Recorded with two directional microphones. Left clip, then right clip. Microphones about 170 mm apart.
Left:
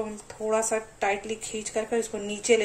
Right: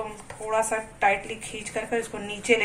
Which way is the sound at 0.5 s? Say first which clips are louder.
Right 1 dB; 30° left (ahead or behind).